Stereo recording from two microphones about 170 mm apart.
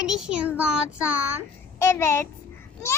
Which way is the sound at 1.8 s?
15° left (ahead or behind).